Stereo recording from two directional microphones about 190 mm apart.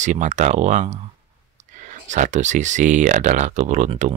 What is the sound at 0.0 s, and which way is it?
Speech, 40° right (ahead or behind).